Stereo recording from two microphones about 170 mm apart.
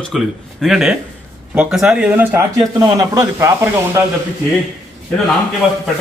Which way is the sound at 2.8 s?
20° right (ahead or behind).